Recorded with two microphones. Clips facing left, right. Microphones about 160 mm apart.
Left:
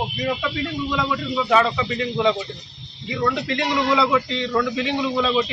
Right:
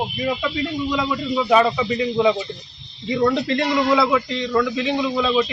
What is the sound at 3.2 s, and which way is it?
A man's voice, 20° right (ahead or behind).